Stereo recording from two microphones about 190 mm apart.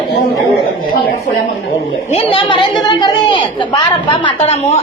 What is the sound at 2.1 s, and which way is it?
A woman's voice, 30° left (ahead or behind).